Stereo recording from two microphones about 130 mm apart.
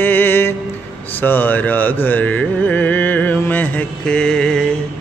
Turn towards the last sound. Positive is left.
turn(degrees=5)  # may be behind; listen again after turning